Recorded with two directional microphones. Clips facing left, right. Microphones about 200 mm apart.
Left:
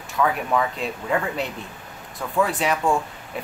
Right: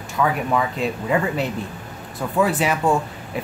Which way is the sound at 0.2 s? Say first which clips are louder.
Right 1 dB; 5° right (ahead or behind).